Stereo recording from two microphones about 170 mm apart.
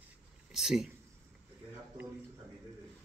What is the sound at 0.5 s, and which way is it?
Speech, centre (ahead or behind).